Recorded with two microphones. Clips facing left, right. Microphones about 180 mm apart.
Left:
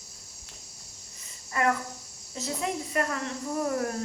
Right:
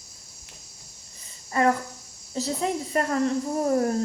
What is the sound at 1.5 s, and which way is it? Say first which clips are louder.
Cricket: right 5 dB; 35° right (ahead or behind).